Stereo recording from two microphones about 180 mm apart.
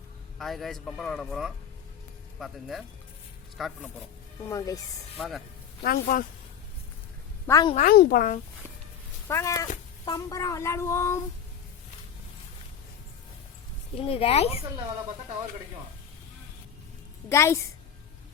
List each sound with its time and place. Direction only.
0.3 s a man's voice: centre (ahead or behind)
4.4 s speech: 20° left (ahead or behind)
5.1 s a man's voice: centre (ahead or behind)
5.8 s speech: 55° left (ahead or behind)
7.4 s speech: 20° left (ahead or behind)
7.8 s speech: 55° left (ahead or behind)
9.2 s speech: 15° left (ahead or behind)
13.9 s speech: 30° left (ahead or behind)
17.2 s speech: 15° left (ahead or behind)